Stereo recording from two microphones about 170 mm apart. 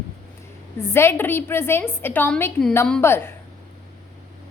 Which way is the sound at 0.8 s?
15° left (ahead or behind).